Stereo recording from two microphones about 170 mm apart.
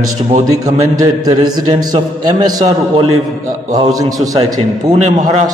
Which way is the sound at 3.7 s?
20° right (ahead or behind).